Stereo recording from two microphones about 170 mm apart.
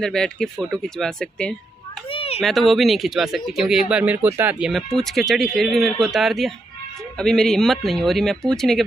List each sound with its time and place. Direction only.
0.0 s speech: 5° left (ahead or behind)
2.0 s a sound: 35° left (ahead or behind)
2.4 s speech: centre (ahead or behind)